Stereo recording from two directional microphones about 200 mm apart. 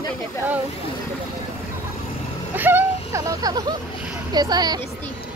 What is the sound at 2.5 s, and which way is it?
A woman's voice, 10° right (ahead or behind).